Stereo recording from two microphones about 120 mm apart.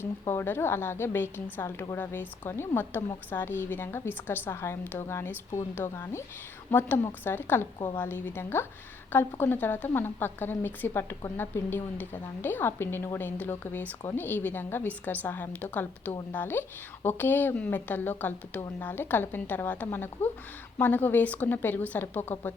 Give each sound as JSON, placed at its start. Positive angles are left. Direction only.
{"t": 0.0, "sound": "a woman's voice", "side_deg": 20}